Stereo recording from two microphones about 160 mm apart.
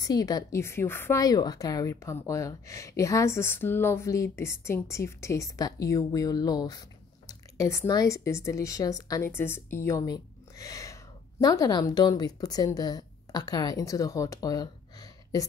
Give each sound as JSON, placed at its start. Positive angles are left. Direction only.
{"t": 0.0, "sound": "a woman's voice", "side_deg": 25}